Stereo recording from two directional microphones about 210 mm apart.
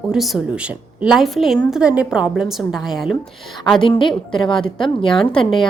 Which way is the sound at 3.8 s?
25° left (ahead or behind).